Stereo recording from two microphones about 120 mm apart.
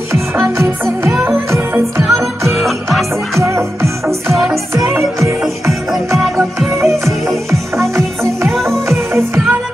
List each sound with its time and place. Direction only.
0.1 s music: 25° right (ahead or behind)
2.5 s music: centre (ahead or behind)
3.3 s music: 25° right (ahead or behind)
5.4 s music: centre (ahead or behind)
6.8 s music: 25° right (ahead or behind)
8.5 s music: centre (ahead or behind)
9.1 s music: 20° right (ahead or behind)